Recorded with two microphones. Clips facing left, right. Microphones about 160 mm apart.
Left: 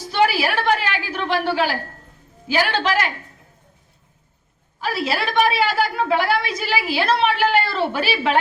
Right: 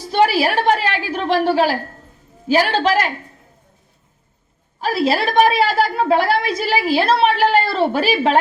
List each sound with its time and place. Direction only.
0.1 s a sound: 35° right (ahead or behind)
2.5 s a woman's voice: 35° right (ahead or behind)
4.8 s a woman's voice: 35° right (ahead or behind)